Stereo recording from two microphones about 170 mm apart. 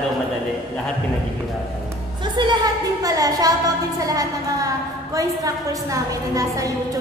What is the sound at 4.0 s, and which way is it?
A woman's voice, 20° right (ahead or behind).